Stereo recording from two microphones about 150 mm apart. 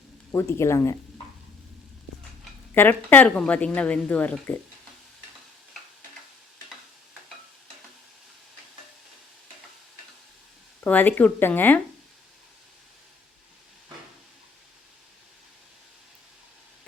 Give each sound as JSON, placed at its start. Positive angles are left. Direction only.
{"t": 0.3, "sound": "speech", "side_deg": 15}
{"t": 2.7, "sound": "speech", "side_deg": 15}
{"t": 10.8, "sound": "speech", "side_deg": 10}